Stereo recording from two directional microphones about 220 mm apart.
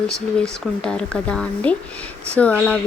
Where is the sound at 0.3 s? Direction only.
5° left (ahead or behind).